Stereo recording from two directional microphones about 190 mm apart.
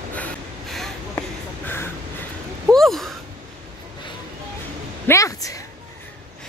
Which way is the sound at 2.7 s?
Centre (ahead or behind).